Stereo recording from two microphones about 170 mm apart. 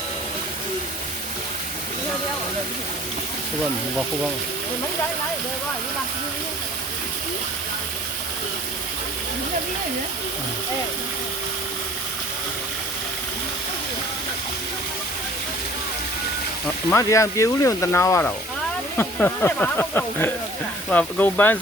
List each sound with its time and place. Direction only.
16.9 s speech: 20° left (ahead or behind)